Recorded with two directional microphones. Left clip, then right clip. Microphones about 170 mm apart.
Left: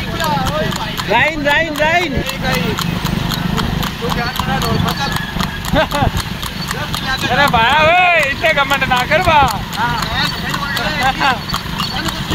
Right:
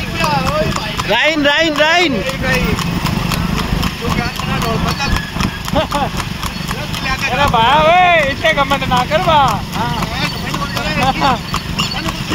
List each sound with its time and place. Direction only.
1.1 s speech: 40° right (ahead or behind)
7.3 s speech: 50° left (ahead or behind)